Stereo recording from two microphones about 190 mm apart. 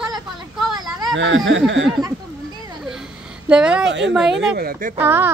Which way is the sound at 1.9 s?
20° right (ahead or behind).